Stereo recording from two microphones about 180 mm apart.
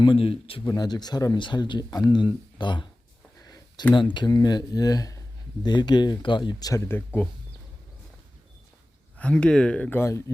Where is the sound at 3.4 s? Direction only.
20° left (ahead or behind).